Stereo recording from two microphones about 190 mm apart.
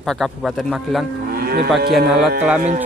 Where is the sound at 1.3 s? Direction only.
55° right (ahead or behind).